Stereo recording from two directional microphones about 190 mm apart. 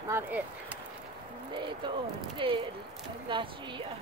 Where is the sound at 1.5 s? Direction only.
25° right (ahead or behind).